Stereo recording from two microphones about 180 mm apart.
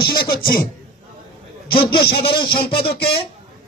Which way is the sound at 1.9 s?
60° left (ahead or behind).